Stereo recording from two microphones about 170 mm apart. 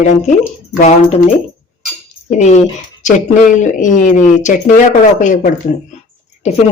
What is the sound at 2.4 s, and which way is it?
Speech, 45° left (ahead or behind).